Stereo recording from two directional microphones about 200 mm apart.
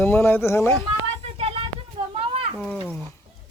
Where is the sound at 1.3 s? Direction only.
30° right (ahead or behind).